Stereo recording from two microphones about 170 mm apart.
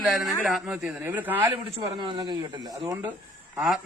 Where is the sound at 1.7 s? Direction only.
25° right (ahead or behind).